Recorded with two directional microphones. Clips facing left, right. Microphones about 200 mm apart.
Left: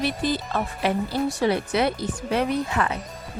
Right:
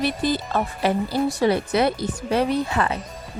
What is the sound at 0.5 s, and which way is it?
Speech, 35° right (ahead or behind).